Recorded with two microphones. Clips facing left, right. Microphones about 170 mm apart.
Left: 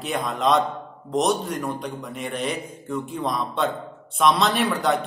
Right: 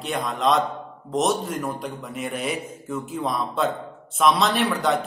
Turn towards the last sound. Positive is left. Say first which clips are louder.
# even
turn(degrees=0)  # may be behind; listen again after turning